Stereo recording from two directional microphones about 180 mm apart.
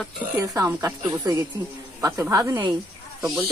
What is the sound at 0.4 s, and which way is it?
A woman's voice, 15° right (ahead or behind).